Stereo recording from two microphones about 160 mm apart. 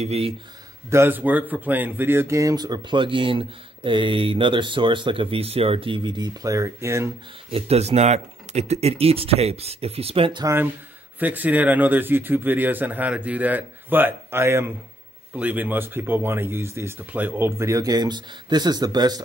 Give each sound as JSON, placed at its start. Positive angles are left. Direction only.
{"t": 0.0, "sound": "speech", "side_deg": -40}
{"t": 0.8, "sound": "speech", "side_deg": -15}
{"t": 7.5, "sound": "speech", "side_deg": -40}
{"t": 10.4, "sound": "speech", "side_deg": -15}